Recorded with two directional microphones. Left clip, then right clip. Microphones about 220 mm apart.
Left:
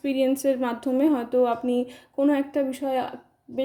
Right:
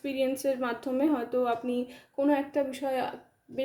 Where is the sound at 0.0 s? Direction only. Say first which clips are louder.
Left 6 dB; 25° left (ahead or behind).